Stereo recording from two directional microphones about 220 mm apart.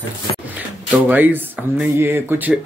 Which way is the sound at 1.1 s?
10° right (ahead or behind).